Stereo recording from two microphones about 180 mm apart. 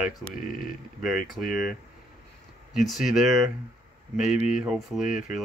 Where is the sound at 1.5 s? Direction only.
50° left (ahead or behind).